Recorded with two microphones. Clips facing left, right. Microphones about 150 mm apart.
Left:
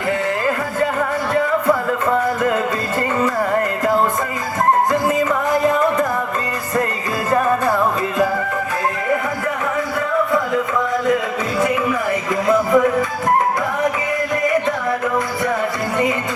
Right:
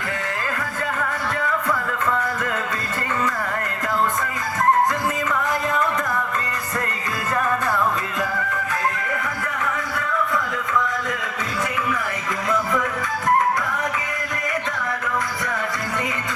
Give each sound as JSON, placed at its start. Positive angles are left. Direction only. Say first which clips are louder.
{"t": 1.3, "sound": "music", "louder": "left 9 dB", "side_deg": 25}
{"t": 7.3, "sound": "music", "louder": "left 6 dB", "side_deg": 30}
{"t": 10.3, "sound": "music", "louder": "left 6 dB", "side_deg": 30}
{"t": 12.5, "sound": "music", "louder": "left 9 dB", "side_deg": 25}